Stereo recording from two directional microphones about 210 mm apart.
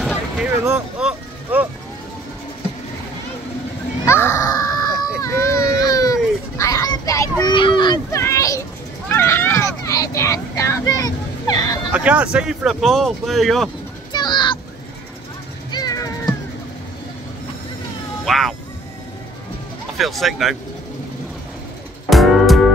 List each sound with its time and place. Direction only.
0.0 s vehicle: 5° right (ahead or behind)
4.0 s a child's voice: 10° left (ahead or behind)
5.2 s a sound: 15° left (ahead or behind)
6.6 s children playing: 15° left (ahead or behind)
9.1 s a sound: 10° left (ahead or behind)
11.9 s speech: 5° right (ahead or behind)
14.1 s vehicle: 20° left (ahead or behind)
15.7 s meow: 20° left (ahead or behind)
18.2 s cat: centre (ahead or behind)
20.0 s speech: centre (ahead or behind)
22.1 s music: centre (ahead or behind)